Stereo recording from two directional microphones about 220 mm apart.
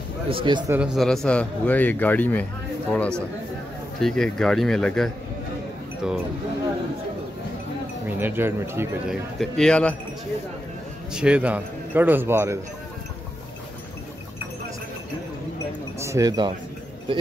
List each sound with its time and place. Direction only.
0.3 s a man's voice: 20° right (ahead or behind)
0.7 s speech: centre (ahead or behind)
8.2 s a man's voice: 10° right (ahead or behind)
9.4 s speech: 5° left (ahead or behind)
11.1 s a man's voice: 5° right (ahead or behind)
16.0 s a man's voice: 15° right (ahead or behind)